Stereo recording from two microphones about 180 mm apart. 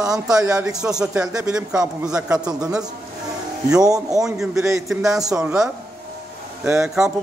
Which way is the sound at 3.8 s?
20° right (ahead or behind).